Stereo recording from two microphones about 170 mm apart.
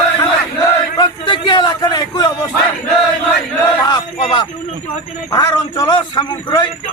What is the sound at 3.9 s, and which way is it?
A man's voice, 25° left (ahead or behind).